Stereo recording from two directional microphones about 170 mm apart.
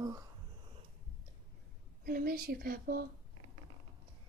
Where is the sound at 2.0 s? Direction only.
60° right (ahead or behind).